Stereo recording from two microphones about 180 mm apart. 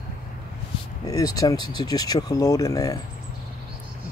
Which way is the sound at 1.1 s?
20° left (ahead or behind).